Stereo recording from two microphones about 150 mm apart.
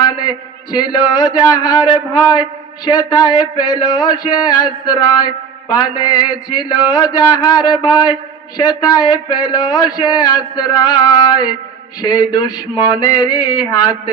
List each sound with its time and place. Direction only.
0.7 s a man's voice: 25° left (ahead or behind)